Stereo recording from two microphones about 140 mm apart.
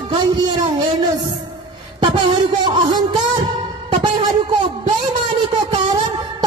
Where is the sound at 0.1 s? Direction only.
35° right (ahead or behind).